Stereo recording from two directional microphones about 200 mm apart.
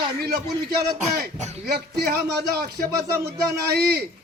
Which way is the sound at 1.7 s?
55° right (ahead or behind).